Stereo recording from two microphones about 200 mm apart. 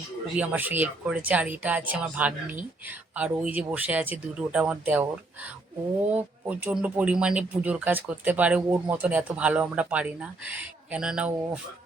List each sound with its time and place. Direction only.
0.3 s speech: 10° right (ahead or behind)